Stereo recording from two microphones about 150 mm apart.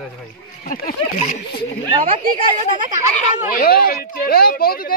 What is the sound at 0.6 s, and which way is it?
Speech, 80° left.